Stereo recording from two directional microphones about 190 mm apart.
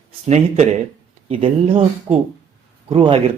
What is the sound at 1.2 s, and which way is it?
Speech, 35° right (ahead or behind).